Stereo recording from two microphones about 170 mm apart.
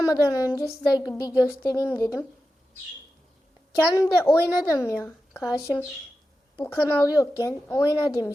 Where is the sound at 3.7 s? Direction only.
15° left (ahead or behind).